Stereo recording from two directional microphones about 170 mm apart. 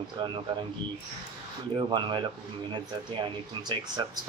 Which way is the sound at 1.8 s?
30° right (ahead or behind).